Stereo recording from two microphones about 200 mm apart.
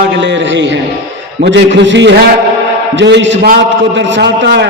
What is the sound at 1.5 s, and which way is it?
A man's voice, 65° right (ahead or behind).